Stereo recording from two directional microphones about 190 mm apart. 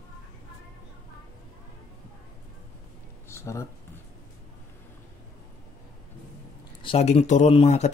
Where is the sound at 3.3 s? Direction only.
15° left (ahead or behind).